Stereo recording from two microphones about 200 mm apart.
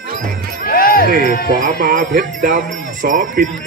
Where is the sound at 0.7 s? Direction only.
45° left (ahead or behind).